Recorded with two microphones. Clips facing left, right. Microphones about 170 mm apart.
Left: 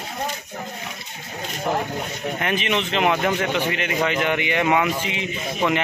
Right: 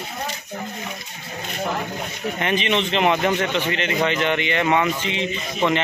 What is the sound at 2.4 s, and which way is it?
Speech, 5° left (ahead or behind).